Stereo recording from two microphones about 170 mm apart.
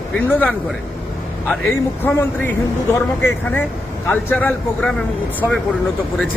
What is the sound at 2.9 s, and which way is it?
Speech, 15° left (ahead or behind).